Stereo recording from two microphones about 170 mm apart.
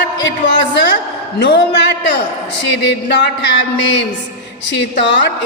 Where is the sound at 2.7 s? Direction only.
85° left.